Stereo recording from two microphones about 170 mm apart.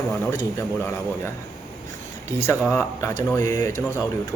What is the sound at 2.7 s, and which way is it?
Speech, 15° left (ahead or behind).